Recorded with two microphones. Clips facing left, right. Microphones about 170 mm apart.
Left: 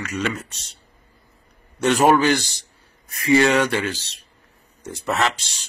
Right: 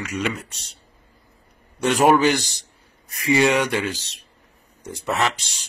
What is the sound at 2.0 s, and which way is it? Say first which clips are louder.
Speech: right 1 dB; 15° right (ahead or behind).